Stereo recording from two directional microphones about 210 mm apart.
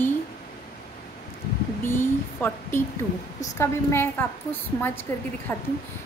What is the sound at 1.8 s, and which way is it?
A woman's voice, 10° left (ahead or behind).